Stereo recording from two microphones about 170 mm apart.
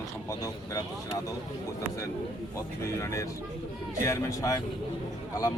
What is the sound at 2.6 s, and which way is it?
Speech, 20° left (ahead or behind).